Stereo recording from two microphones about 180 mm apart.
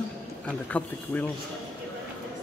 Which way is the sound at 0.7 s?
10° left (ahead or behind).